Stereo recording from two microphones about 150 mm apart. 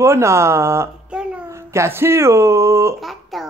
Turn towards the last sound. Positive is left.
turn(degrees=0)  # may be behind; listen again after turning